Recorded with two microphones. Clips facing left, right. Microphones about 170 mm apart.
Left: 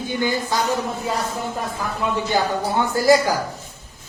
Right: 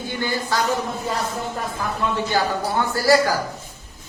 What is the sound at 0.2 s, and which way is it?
Speech, 15° left (ahead or behind).